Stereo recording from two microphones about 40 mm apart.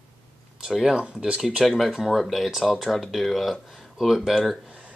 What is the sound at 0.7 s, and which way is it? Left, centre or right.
Speech, centre.